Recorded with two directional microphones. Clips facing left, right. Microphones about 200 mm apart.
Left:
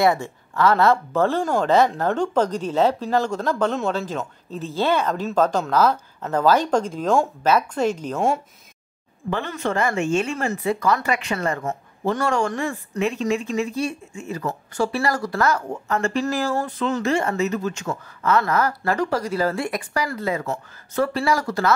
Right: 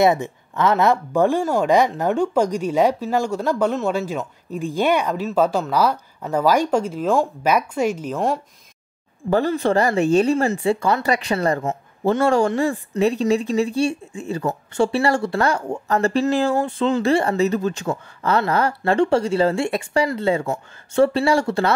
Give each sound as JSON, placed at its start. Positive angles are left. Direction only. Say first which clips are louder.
{"t": 0.0, "sound": "speech", "louder": "right 2 dB", "side_deg": -20}
{"t": 9.3, "sound": "speech", "louder": "right 7 dB", "side_deg": -35}